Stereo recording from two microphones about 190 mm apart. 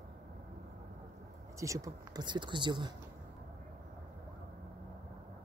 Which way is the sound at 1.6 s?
15° right (ahead or behind).